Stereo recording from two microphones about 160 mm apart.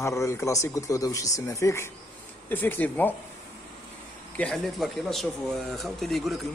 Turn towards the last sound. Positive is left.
turn(degrees=0)  # may be behind; listen again after turning